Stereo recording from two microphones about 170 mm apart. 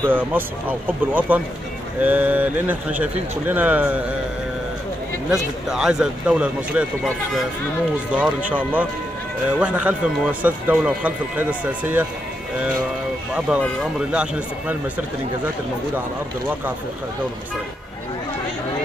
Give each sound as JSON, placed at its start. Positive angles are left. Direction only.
{"t": 0.0, "sound": "a man's voice", "side_deg": -10}
{"t": 5.3, "sound": "speech", "side_deg": -5}
{"t": 8.2, "sound": "a man's voice", "side_deg": -10}
{"t": 13.5, "sound": "a man's voice", "side_deg": -5}